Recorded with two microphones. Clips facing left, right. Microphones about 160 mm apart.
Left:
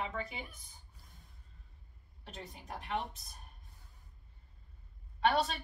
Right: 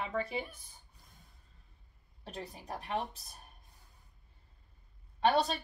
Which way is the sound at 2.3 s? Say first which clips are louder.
Right 4 dB; 35° right (ahead or behind).